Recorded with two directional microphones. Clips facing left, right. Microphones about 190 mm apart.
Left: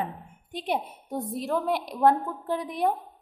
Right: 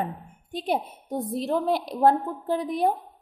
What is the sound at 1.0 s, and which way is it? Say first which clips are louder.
A woman's voice: right 5 dB; 25° right (ahead or behind).